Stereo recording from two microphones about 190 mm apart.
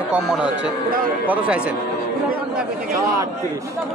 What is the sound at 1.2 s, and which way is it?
Speech, 5° right (ahead or behind).